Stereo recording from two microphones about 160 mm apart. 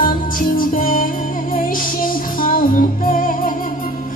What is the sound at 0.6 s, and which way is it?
Music, 60° left (ahead or behind).